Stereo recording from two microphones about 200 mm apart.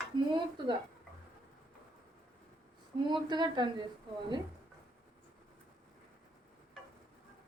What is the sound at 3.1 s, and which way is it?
Speech, 20° right (ahead or behind).